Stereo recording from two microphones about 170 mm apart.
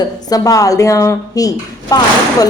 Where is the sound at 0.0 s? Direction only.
20° left (ahead or behind).